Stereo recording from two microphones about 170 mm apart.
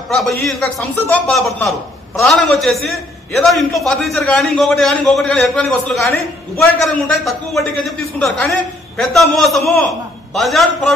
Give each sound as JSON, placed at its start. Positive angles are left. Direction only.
{"t": 0.1, "sound": "a man's voice", "side_deg": 0}